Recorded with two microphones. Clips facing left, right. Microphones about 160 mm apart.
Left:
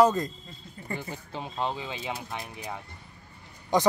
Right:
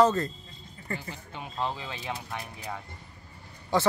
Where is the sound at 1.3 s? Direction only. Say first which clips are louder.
Left 1 dB; 25° left (ahead or behind).